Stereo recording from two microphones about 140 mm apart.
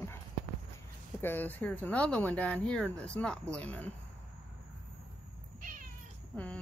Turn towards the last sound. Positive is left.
turn(degrees=10)  # may be behind; listen again after turning